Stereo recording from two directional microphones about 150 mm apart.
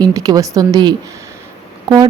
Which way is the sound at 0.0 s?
25° right (ahead or behind).